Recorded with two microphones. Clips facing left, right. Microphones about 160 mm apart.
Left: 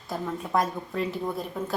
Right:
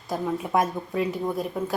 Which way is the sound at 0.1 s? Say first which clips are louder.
Right 3 dB; 15° right (ahead or behind).